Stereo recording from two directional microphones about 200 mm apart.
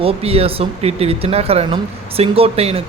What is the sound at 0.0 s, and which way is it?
Speech, 30° right (ahead or behind).